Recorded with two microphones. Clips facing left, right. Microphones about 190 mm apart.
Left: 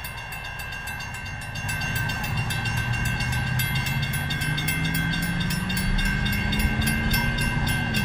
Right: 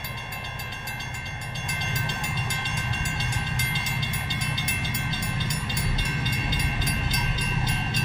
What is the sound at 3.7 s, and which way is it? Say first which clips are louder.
Train: left 2 dB; 60° left (ahead or behind).